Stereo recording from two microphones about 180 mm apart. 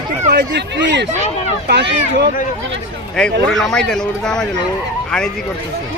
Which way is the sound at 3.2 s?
5° left (ahead or behind).